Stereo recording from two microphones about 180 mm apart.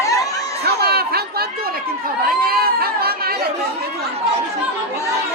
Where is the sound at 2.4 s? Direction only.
55° right (ahead or behind).